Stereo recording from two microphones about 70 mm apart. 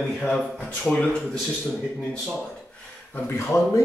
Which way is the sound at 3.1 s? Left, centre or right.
Left.